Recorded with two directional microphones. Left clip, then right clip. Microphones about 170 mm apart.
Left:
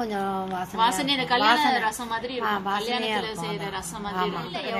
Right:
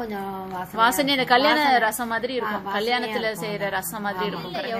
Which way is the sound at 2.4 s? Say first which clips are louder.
Left 1 dB; 20° left (ahead or behind).